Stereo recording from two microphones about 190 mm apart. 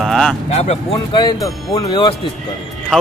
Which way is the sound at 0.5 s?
35° left (ahead or behind).